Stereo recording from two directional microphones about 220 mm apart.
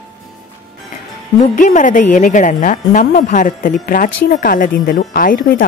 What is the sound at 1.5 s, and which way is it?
A woman's voice, 35° left (ahead or behind).